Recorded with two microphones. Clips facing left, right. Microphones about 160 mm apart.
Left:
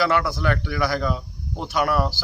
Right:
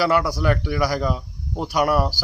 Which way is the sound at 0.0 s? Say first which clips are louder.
Right 2 dB; 10° right (ahead or behind).